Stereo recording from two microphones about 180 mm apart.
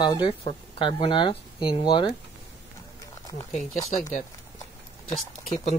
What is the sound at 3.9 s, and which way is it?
Speech, 40° left (ahead or behind).